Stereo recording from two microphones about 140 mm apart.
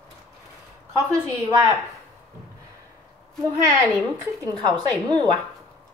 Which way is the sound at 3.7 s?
25° right (ahead or behind).